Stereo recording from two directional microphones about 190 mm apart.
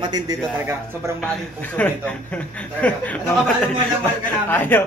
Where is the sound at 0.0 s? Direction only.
20° right (ahead or behind).